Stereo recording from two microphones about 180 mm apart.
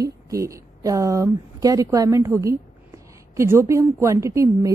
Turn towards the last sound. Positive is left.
turn(degrees=-15)  # may be behind; listen again after turning